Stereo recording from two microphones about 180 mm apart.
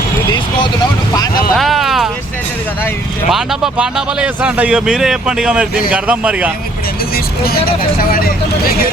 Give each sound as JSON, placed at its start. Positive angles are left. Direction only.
{"t": 0.3, "sound": "vehicle", "side_deg": 25}
{"t": 1.5, "sound": "a sound", "side_deg": 0}
{"t": 3.2, "sound": "a man's voice", "side_deg": 0}
{"t": 7.4, "sound": "speech", "side_deg": 55}